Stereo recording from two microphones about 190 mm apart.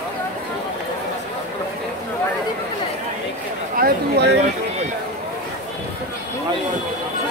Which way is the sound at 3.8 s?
60° right (ahead or behind).